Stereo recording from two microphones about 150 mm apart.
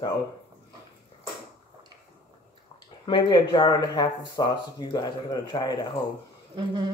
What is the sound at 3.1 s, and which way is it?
Speech, 30° left (ahead or behind).